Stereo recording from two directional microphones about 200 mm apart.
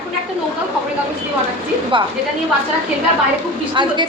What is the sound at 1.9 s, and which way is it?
Speech, 25° right (ahead or behind).